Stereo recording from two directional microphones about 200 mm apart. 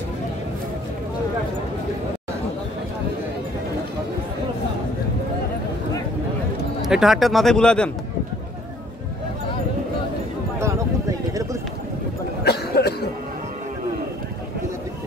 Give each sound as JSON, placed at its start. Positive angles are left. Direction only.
{"t": 6.9, "sound": "speech", "side_deg": 0}
{"t": 10.6, "sound": "a sound", "side_deg": -15}
{"t": 12.4, "sound": "cough", "side_deg": 55}